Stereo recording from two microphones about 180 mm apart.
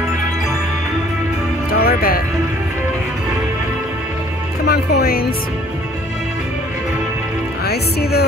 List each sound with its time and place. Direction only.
1.7 s music: 55° left (ahead or behind)
4.6 s music: 60° left (ahead or behind)
7.6 s speech: 60° left (ahead or behind)